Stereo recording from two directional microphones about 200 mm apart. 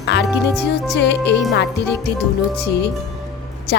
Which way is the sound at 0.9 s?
60° left (ahead or behind).